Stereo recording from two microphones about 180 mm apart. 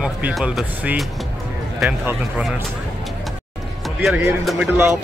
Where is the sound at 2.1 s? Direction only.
5° right (ahead or behind).